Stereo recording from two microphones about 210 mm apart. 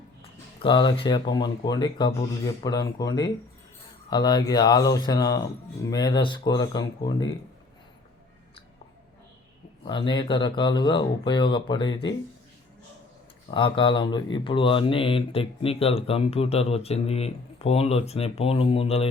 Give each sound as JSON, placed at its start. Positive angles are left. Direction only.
{"t": 0.2, "sound": "speech", "side_deg": 25}
{"t": 9.8, "sound": "speech", "side_deg": 20}
{"t": 13.5, "sound": "speech", "side_deg": 25}